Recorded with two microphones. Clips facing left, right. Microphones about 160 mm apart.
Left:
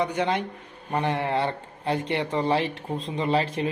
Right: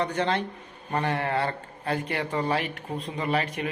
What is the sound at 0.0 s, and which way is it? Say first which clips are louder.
A man's voice: left 1 dB; 15° left (ahead or behind).